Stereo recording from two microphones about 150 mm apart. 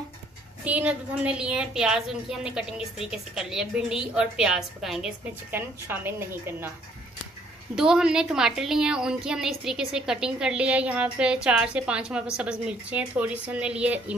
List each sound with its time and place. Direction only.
0.7 s a woman's voice: 10° right (ahead or behind)
5.6 s a woman's voice: 15° right (ahead or behind)
7.7 s a woman's voice: 5° right (ahead or behind)